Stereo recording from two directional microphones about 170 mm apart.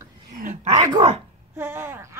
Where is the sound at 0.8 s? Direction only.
25° right (ahead or behind).